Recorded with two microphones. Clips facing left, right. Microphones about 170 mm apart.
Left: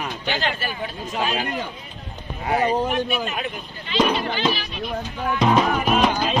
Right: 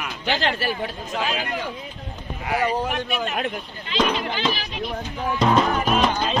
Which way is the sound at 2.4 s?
30° left (ahead or behind).